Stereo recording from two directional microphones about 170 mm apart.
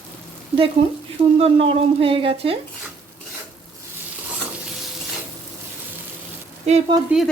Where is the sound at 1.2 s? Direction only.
35° right (ahead or behind).